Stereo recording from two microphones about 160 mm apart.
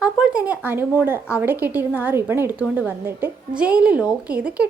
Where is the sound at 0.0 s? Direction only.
5° right (ahead or behind).